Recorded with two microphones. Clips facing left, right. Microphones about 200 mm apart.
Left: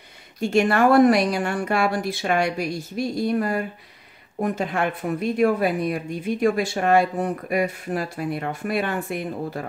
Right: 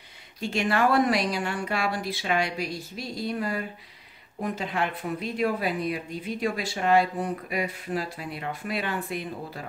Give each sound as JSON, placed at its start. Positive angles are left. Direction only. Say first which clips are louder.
{"t": 0.4, "sound": "speech", "louder": "left 6 dB", "side_deg": 50}